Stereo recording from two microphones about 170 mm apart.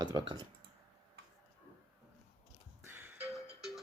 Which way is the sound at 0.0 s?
25° right (ahead or behind).